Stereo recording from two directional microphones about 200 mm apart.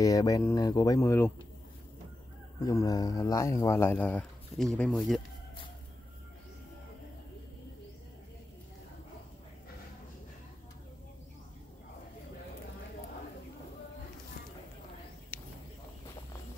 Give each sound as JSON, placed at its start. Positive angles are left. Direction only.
{"t": 0.0, "sound": "speech", "side_deg": 15}
{"t": 2.6, "sound": "speech", "side_deg": 15}